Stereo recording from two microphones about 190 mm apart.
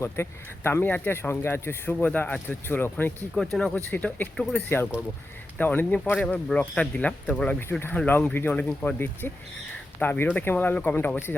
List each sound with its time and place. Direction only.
0.0 s speech: 15° left (ahead or behind)